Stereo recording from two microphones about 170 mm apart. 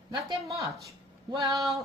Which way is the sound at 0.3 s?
20° right (ahead or behind).